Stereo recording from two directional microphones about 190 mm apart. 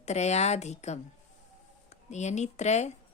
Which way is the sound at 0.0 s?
35° left (ahead or behind).